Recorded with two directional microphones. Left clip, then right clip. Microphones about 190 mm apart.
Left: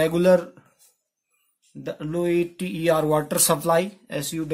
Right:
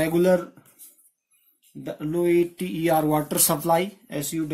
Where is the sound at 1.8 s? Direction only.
35° left (ahead or behind).